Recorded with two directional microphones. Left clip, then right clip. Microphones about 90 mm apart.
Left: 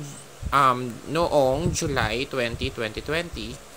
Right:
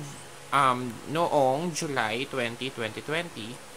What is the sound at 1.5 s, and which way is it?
Speech, 40° left (ahead or behind).